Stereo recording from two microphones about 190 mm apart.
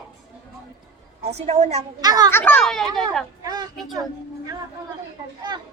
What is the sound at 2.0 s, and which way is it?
Speech, 20° right (ahead or behind).